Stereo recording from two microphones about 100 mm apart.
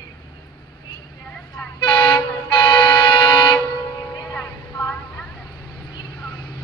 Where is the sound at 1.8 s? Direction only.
55° left (ahead or behind).